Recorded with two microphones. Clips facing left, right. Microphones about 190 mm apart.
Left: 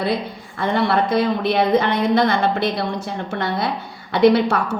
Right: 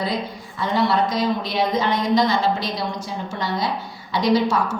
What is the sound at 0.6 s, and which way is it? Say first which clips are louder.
A woman's voice: left 1 dB; 55° left (ahead or behind).